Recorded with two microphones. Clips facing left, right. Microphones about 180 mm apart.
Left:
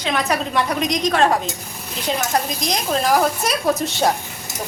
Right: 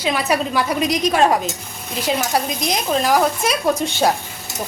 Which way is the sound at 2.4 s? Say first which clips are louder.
Right 1 dB; 10° right (ahead or behind).